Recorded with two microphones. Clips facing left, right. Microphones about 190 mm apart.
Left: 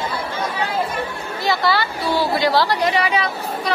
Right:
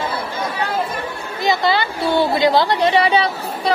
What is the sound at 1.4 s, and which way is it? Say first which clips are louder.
A woman's voice: right 2 dB; 20° right (ahead or behind).